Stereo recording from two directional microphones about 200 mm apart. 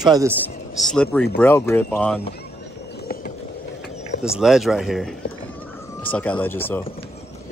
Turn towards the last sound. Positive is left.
turn(degrees=10)  # may be behind; listen again after turning